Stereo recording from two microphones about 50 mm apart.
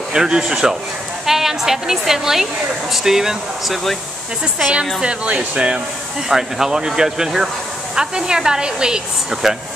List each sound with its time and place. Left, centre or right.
0.1 s speech: centre
5.0 s speech: right
6.2 s speech: centre